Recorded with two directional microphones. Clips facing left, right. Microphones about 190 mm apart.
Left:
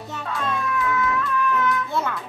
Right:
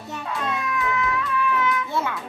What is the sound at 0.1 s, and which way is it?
Music, 15° right (ahead or behind).